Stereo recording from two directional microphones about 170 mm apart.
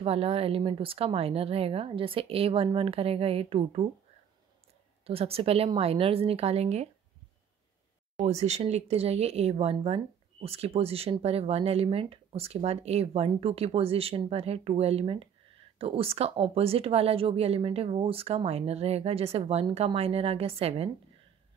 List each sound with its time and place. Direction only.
0.0 s speech: 35° right (ahead or behind)
5.0 s speech: 35° right (ahead or behind)
8.2 s speech: 40° right (ahead or behind)